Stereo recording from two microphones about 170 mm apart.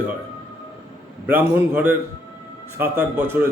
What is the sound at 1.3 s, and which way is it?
A man's voice, 10° right (ahead or behind).